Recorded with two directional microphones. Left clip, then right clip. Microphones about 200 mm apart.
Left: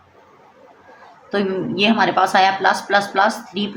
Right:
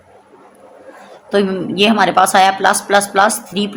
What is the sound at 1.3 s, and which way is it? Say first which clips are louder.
A woman's voice: right 5 dB; 50° right (ahead or behind).